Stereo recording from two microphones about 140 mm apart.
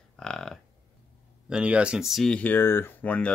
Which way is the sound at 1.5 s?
10° right (ahead or behind).